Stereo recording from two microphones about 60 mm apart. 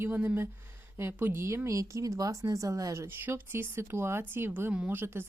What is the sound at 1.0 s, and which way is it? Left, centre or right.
Speech, right.